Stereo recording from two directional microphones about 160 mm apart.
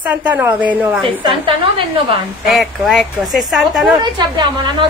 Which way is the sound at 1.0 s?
30° right (ahead or behind).